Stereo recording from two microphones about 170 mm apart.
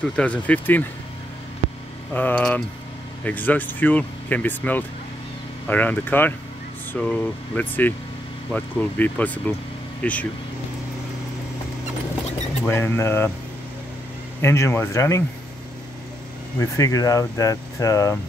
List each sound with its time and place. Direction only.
0.1 s speech: 5° left (ahead or behind)
2.1 s speech: 10° left (ahead or behind)
12.6 s speech: 15° left (ahead or behind)
14.4 s speech: 15° left (ahead or behind)
16.5 s speech: 20° left (ahead or behind)